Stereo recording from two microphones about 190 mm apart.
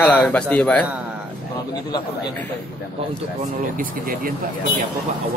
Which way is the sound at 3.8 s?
50° right (ahead or behind).